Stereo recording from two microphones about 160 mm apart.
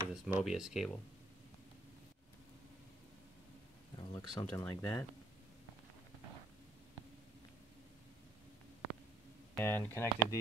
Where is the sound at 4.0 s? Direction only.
25° left (ahead or behind).